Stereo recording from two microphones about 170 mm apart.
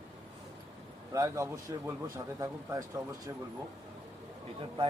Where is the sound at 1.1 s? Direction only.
20° right (ahead or behind).